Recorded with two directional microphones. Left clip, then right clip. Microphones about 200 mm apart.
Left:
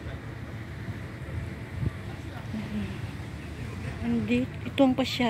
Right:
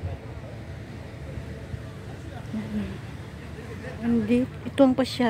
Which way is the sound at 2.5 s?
55° right (ahead or behind).